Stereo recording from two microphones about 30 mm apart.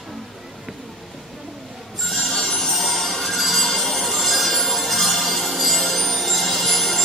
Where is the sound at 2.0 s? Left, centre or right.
Centre.